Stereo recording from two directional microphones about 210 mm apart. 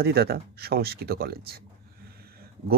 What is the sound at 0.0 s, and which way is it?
Speech, 50° right (ahead or behind).